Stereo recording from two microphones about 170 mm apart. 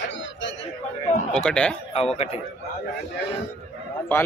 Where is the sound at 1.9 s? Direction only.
35° left (ahead or behind).